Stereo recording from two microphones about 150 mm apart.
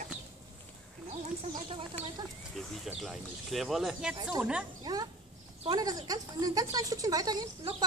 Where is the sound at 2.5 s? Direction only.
Centre (ahead or behind).